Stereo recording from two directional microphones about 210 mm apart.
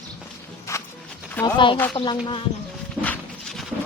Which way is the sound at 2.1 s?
25° left (ahead or behind).